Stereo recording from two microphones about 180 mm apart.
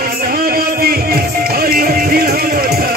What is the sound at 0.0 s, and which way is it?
Music, 55° right (ahead or behind).